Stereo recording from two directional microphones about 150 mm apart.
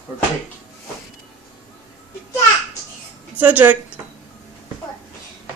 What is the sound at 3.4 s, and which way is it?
Speech, 10° right (ahead or behind).